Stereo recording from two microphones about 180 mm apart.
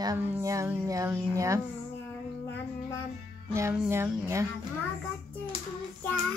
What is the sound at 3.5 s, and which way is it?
Speech, 15° right (ahead or behind).